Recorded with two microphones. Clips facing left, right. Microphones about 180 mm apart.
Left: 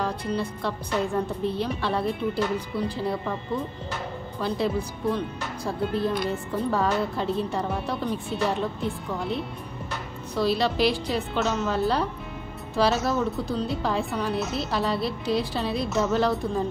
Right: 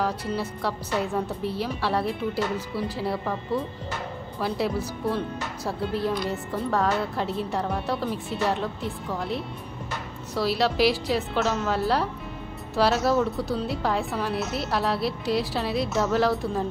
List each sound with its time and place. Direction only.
0.0 s a woman's voice: 5° right (ahead or behind)
4.4 s a woman's voice: 5° right (ahead or behind)